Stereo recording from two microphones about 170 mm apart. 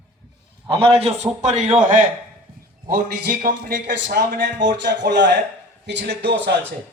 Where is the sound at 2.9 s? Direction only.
65° right (ahead or behind).